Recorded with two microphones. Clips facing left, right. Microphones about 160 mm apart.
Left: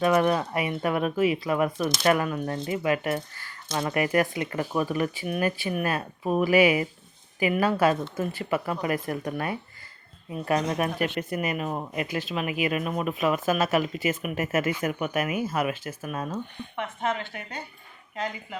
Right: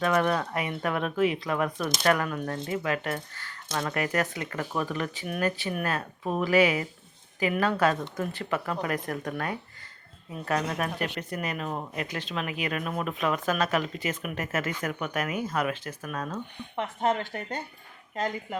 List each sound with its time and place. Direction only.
0.0 s speech: 10° left (ahead or behind)
16.7 s a woman's voice: 40° right (ahead or behind)